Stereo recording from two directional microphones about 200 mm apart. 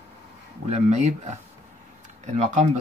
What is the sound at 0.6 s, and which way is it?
Speech, 35° right (ahead or behind).